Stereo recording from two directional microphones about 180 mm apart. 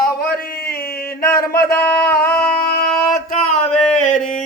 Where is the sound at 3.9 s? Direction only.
45° left (ahead or behind).